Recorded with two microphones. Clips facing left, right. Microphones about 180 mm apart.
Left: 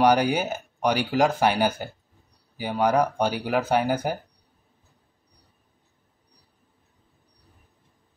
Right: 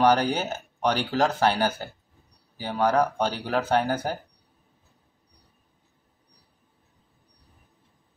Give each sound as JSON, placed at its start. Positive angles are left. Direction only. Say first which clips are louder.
{"t": 0.0, "sound": "speech", "louder": "left 1 dB", "side_deg": 10}